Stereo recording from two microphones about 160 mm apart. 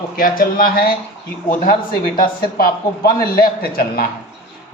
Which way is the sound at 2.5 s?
70° left (ahead or behind).